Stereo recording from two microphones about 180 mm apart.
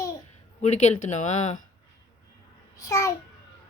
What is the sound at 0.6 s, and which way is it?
Speech, 40° left (ahead or behind).